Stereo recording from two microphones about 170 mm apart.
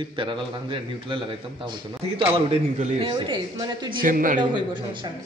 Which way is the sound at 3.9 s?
55° right (ahead or behind).